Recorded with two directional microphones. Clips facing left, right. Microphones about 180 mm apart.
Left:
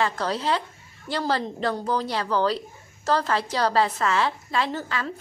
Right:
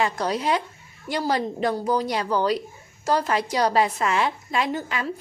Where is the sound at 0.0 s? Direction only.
15° right (ahead or behind).